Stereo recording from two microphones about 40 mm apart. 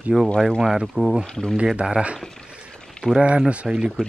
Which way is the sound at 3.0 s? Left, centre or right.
Right.